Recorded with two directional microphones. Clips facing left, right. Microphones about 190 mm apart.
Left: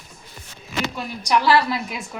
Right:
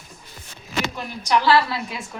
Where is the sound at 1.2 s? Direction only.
15° left (ahead or behind).